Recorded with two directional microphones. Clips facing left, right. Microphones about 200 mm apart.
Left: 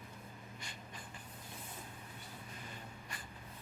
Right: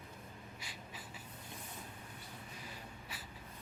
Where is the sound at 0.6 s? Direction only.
5° right (ahead or behind).